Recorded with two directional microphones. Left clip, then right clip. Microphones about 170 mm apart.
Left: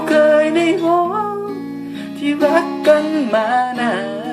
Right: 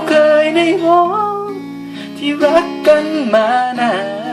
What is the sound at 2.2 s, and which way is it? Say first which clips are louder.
Music: right 3 dB; 5° left (ahead or behind).